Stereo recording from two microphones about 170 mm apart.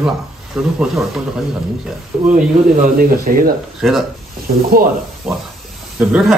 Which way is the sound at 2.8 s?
60° right (ahead or behind).